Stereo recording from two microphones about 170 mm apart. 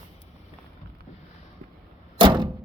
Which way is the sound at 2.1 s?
25° right (ahead or behind).